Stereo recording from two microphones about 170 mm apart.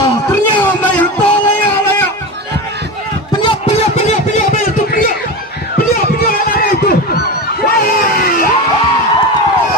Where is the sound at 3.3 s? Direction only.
25° left (ahead or behind); by 8.5 s 60° left (ahead or behind).